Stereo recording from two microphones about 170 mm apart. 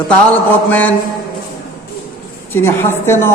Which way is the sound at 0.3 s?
10° left (ahead or behind).